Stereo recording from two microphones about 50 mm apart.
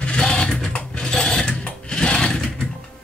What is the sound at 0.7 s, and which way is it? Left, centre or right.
Sewing machine, centre.